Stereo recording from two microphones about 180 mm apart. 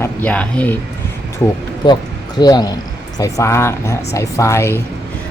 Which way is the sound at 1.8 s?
25° left (ahead or behind).